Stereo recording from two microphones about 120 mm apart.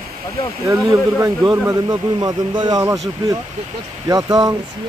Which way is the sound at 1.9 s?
35° right (ahead or behind).